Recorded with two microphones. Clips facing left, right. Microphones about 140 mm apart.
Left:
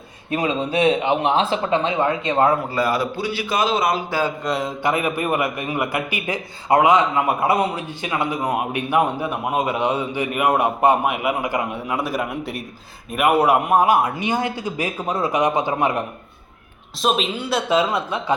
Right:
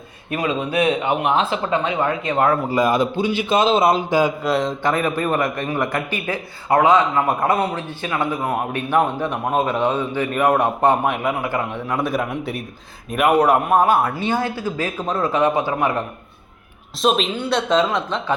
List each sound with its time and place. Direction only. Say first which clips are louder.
0.3 s speech: left 1 dB; 30° left (ahead or behind)
2.6 s a man's voice: right 3 dB; 15° right (ahead or behind)
4.4 s a man's voice: right 3 dB; centre (ahead or behind)
4.8 s a man's voice: right 1 dB; 15° left (ahead or behind)
17.0 s a man's voice: right 2 dB; 5° left (ahead or behind)